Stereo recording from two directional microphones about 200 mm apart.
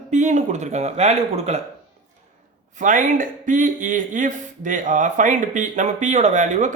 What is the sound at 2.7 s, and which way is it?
A man's voice, 40° right (ahead or behind).